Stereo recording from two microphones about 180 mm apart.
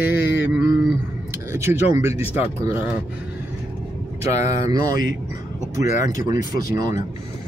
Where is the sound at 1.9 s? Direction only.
15° right (ahead or behind).